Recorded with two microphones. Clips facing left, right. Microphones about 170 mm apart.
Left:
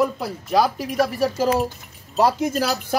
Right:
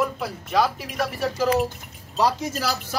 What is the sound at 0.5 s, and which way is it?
Speech, 45° left (ahead or behind).